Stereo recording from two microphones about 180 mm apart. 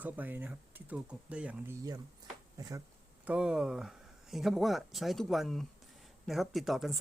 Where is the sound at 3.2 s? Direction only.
5° right (ahead or behind).